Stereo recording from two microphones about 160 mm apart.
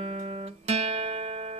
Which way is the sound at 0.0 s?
40° right (ahead or behind).